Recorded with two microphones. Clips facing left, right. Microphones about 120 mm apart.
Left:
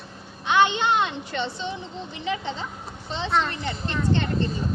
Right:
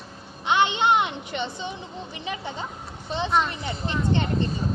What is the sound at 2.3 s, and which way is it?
A woman's voice, 15° right (ahead or behind).